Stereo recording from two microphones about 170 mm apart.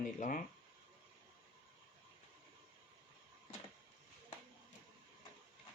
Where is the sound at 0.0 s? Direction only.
50° left (ahead or behind).